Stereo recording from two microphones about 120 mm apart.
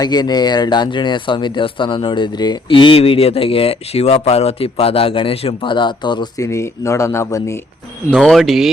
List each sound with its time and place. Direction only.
0.0 s speech: 35° left (ahead or behind)
6.4 s speech: 25° left (ahead or behind)
8.1 s speech: centre (ahead or behind)